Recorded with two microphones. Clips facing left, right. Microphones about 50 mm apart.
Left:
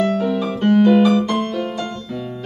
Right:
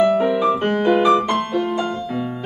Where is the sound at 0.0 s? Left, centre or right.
Right.